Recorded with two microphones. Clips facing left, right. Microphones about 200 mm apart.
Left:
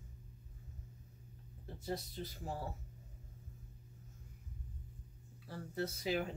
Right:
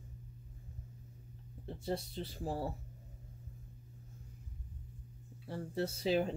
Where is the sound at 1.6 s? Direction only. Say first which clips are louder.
Right 4 dB; 25° right (ahead or behind).